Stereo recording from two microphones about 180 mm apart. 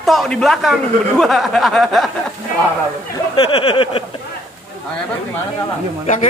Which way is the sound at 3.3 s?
30° left (ahead or behind).